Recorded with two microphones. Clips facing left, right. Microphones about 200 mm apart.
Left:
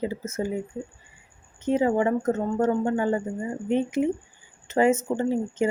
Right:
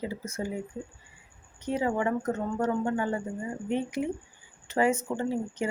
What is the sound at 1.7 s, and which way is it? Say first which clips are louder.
Speech: left 6 dB; 25° left (ahead or behind).